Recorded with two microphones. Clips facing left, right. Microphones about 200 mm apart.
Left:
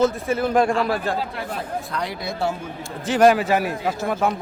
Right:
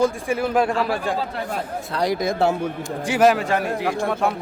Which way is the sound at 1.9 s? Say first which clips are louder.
Right 6 dB; 40° right (ahead or behind).